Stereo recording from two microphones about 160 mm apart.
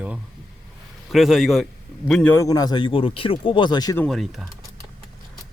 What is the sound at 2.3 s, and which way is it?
Speech, 25° left (ahead or behind).